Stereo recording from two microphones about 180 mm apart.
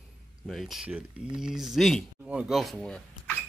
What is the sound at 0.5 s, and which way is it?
Speech, centre (ahead or behind).